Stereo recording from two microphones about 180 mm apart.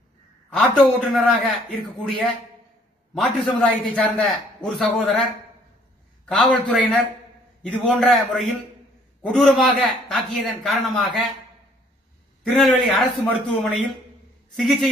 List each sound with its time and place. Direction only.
0.5 s a man's voice: 5° left (ahead or behind)
3.2 s a man's voice: 5° left (ahead or behind)
6.2 s a man's voice: centre (ahead or behind)
12.4 s a man's voice: centre (ahead or behind)